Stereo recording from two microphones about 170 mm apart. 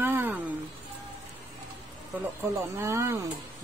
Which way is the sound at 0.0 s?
10° right (ahead or behind).